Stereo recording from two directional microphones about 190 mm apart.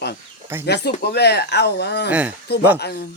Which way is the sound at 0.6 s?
60° left (ahead or behind).